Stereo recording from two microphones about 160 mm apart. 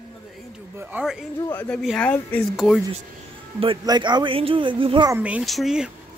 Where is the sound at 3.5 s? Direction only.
30° right (ahead or behind).